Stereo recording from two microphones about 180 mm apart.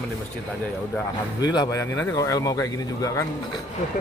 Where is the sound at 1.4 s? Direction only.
20° left (ahead or behind).